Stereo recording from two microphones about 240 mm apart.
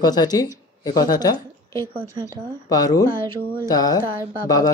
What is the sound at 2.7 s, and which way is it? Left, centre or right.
Speech, centre.